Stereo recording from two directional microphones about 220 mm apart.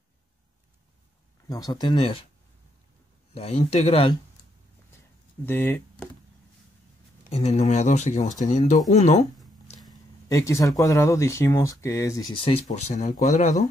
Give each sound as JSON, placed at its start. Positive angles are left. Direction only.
{"t": 1.5, "sound": "speech", "side_deg": 20}
{"t": 3.3, "sound": "speech", "side_deg": 30}
{"t": 5.4, "sound": "speech", "side_deg": 10}
{"t": 7.2, "sound": "speech", "side_deg": 30}
{"t": 9.8, "sound": "speech", "side_deg": 15}